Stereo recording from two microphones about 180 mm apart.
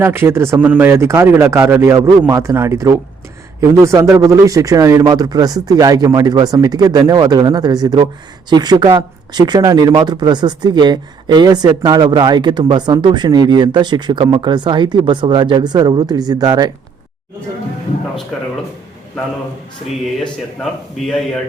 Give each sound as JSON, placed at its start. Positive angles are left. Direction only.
{"t": 0.0, "sound": "speech", "side_deg": -15}